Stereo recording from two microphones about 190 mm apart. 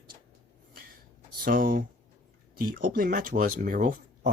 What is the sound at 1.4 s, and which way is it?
Speech, 50° right (ahead or behind).